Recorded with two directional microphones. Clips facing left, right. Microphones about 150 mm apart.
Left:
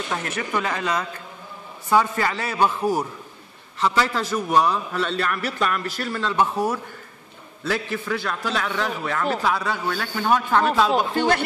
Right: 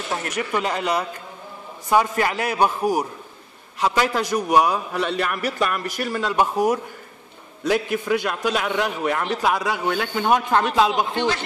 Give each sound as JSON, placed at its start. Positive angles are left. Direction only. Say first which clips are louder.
{"t": 0.3, "sound": "a man's voice", "louder": "right 4 dB", "side_deg": -15}
{"t": 10.9, "sound": "speech", "louder": "left 2 dB", "side_deg": 50}